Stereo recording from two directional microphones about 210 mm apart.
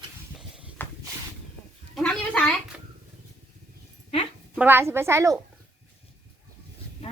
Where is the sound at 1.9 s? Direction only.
5° left (ahead or behind).